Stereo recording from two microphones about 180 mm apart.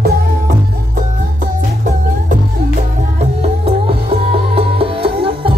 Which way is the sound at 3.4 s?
35° right (ahead or behind).